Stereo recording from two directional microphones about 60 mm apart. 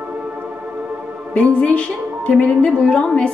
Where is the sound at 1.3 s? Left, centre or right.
Left.